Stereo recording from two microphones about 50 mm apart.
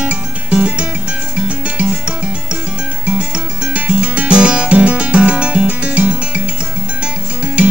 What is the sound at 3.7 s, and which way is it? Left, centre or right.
Music, right.